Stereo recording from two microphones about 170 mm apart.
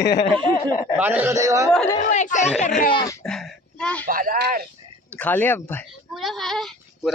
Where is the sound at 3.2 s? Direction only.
5° left (ahead or behind).